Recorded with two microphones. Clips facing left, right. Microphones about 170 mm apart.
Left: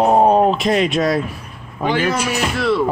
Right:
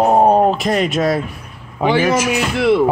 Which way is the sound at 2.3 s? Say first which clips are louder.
Right 4 dB; 20° right (ahead or behind).